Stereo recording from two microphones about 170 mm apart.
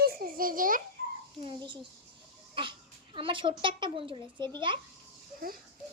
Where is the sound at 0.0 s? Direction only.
60° right (ahead or behind).